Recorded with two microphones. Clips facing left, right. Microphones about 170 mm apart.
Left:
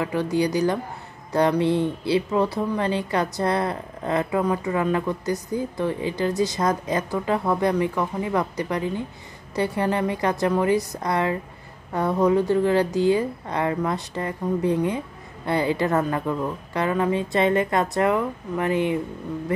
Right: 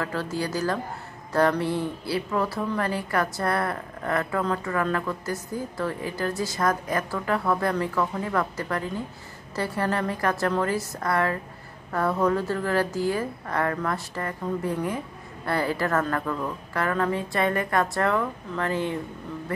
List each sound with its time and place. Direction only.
0.0 s a woman's voice: 15° left (ahead or behind)